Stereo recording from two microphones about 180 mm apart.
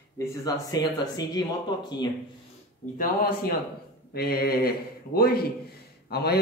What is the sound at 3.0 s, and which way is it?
Speech, 55° left (ahead or behind).